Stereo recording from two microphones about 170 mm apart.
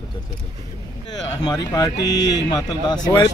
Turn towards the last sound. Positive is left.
turn(degrees=25)  # may be behind; listen again after turning